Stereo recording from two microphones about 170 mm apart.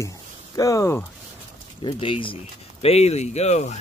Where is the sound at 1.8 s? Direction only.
30° left (ahead or behind).